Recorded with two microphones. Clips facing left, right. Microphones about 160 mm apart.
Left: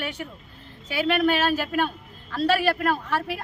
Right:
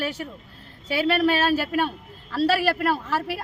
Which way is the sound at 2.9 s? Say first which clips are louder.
Right 1 dB; 5° right (ahead or behind).